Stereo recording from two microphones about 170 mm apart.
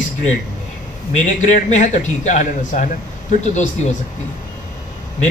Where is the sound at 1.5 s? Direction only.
45° left (ahead or behind).